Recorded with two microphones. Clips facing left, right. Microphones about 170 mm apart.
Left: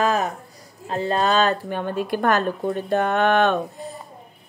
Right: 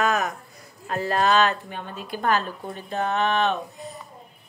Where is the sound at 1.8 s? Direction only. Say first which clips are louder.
Left 8 dB; 60° left (ahead or behind).